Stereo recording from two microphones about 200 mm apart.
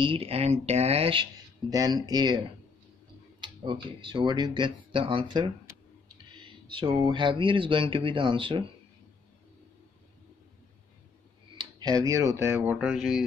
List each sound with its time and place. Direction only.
0.0 s speech: 30° right (ahead or behind)
1.7 s speech: 20° right (ahead or behind)
11.5 s speech: 20° right (ahead or behind); by 13.2 s centre (ahead or behind)